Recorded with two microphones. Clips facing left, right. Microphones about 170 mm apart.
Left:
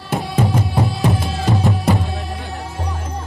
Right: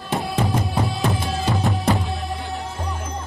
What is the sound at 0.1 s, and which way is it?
Music, centre (ahead or behind).